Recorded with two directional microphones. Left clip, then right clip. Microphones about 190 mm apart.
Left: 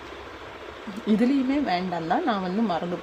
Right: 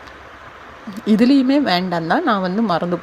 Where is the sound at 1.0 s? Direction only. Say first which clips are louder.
Right 9 dB; 30° right (ahead or behind).